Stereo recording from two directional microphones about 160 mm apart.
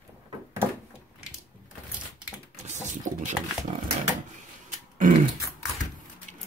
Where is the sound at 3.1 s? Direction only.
50° right (ahead or behind).